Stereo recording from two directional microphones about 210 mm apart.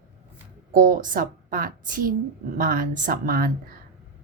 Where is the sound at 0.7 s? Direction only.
40° right (ahead or behind).